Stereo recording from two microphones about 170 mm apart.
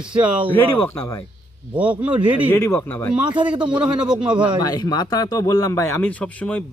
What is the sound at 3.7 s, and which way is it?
Speech, 5° right (ahead or behind).